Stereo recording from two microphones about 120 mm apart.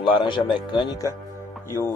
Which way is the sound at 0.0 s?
40° left (ahead or behind).